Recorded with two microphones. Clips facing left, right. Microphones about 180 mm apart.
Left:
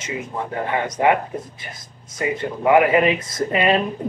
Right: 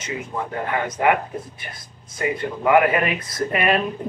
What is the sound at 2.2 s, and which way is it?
Speech, 20° left (ahead or behind).